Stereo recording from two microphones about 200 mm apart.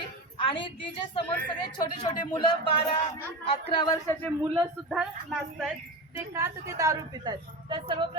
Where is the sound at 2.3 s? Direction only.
25° left (ahead or behind).